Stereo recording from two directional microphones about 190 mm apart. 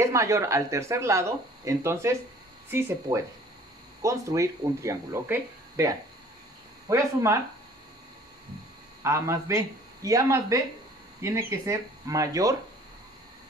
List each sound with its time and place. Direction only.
0.0 s speech: 15° right (ahead or behind)
9.0 s speech: 15° right (ahead or behind)